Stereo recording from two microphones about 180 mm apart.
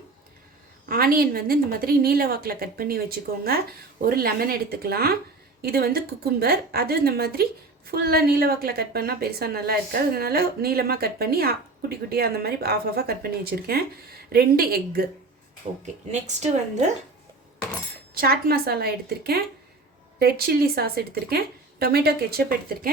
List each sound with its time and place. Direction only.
0.9 s a woman's voice: 55° right (ahead or behind)
18.1 s a woman's voice: 55° right (ahead or behind)